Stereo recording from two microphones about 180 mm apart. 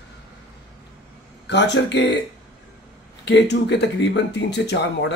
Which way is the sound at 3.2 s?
75° left (ahead or behind).